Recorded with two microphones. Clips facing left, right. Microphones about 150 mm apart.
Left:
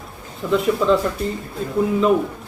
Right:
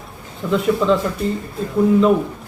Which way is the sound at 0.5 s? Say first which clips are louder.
Right 1 dB; centre (ahead or behind).